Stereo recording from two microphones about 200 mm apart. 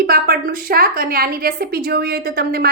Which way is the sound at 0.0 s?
50° right (ahead or behind).